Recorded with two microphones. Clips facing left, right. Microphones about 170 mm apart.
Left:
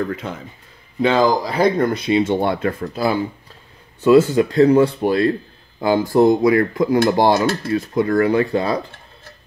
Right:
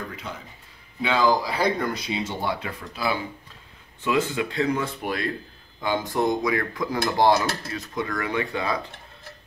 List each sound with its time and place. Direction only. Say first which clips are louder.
0.1 s speech: left 9 dB; 50° left (ahead or behind); by 5.3 s 30° left (ahead or behind)
6.1 s dishes: left 11 dB; 30° left (ahead or behind)
7.9 s speech: left 11 dB; 35° left (ahead or behind)